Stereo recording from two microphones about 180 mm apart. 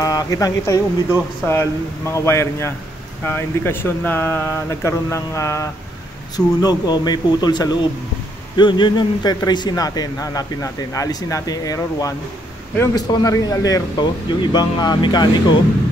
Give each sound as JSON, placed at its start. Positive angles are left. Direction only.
{"t": 0.0, "sound": "a man's voice", "side_deg": 20}